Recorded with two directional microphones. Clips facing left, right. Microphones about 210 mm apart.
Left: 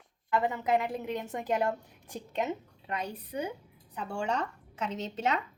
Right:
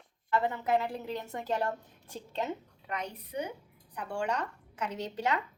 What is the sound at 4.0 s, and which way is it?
Speech, 25° left (ahead or behind).